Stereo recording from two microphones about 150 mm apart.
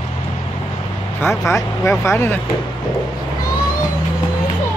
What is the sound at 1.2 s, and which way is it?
Speech, 20° left (ahead or behind).